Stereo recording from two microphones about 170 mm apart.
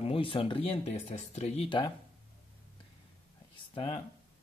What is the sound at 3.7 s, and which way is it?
Speech, 30° left (ahead or behind).